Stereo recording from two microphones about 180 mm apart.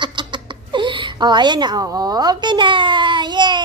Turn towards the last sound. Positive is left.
turn(degrees=-25)  # may be behind; listen again after turning